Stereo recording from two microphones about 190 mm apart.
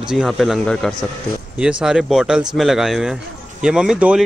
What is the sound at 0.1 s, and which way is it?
Speech, centre (ahead or behind).